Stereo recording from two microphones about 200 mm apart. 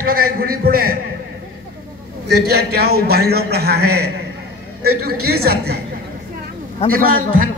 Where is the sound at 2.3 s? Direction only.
55° right (ahead or behind).